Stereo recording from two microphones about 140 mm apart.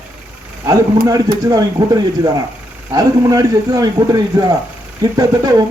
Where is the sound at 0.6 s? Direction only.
25° right (ahead or behind).